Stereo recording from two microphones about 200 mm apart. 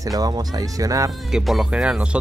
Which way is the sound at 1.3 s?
Centre (ahead or behind).